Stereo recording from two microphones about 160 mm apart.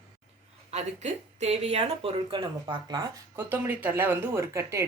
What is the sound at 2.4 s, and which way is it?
Speech, 25° right (ahead or behind).